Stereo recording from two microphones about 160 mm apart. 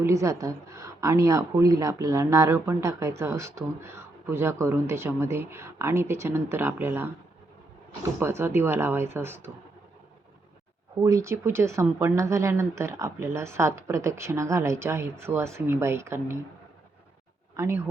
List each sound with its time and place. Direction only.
0.0 s a woman's voice: 20° right (ahead or behind)
8.2 s a woman's voice: 15° right (ahead or behind)
11.0 s a woman's voice: 20° right (ahead or behind)
17.6 s a woman's voice: 15° right (ahead or behind)